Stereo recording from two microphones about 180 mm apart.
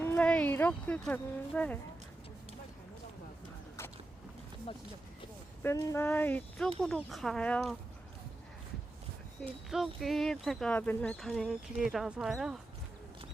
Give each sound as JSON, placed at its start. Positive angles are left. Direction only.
{"t": 0.0, "sound": "speech", "side_deg": 10}
{"t": 5.6, "sound": "speech", "side_deg": 15}
{"t": 9.4, "sound": "speech", "side_deg": 0}